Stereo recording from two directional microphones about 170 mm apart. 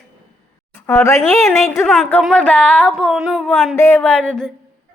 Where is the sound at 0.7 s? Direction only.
15° left (ahead or behind).